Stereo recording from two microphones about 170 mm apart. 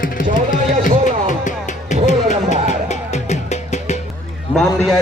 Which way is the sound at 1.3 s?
45° left (ahead or behind).